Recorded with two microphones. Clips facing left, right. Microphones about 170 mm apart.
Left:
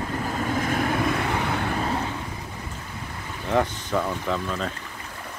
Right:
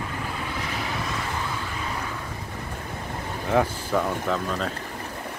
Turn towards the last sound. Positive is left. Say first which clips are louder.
# right 1 dB
turn(degrees=0)  # may be behind; listen again after turning